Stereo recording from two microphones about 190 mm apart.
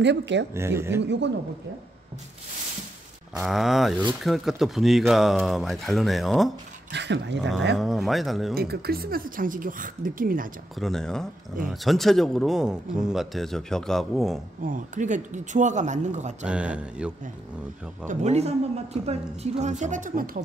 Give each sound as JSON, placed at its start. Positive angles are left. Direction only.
{"t": 0.0, "sound": "speech", "side_deg": -65}
{"t": 0.6, "sound": "speech", "side_deg": -15}
{"t": 1.0, "sound": "speech", "side_deg": -65}
{"t": 3.3, "sound": "speech", "side_deg": 0}
{"t": 6.9, "sound": "speech", "side_deg": -65}
{"t": 7.7, "sound": "speech", "side_deg": 0}
{"t": 8.5, "sound": "speech", "side_deg": -55}
{"t": 10.8, "sound": "speech", "side_deg": 0}
{"t": 14.6, "sound": "speech", "side_deg": -45}
{"t": 16.4, "sound": "speech", "side_deg": -5}
{"t": 18.0, "sound": "speech", "side_deg": -35}